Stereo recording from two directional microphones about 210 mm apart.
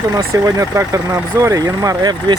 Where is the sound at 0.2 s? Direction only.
15° right (ahead or behind).